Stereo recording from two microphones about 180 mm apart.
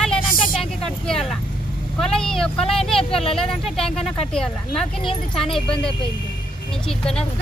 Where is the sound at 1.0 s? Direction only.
5° left (ahead or behind).